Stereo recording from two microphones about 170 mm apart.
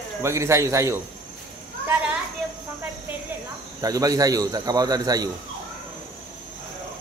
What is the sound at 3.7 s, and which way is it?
A man's voice, 20° right (ahead or behind).